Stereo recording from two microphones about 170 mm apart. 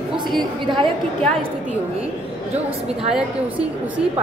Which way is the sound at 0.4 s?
25° right (ahead or behind).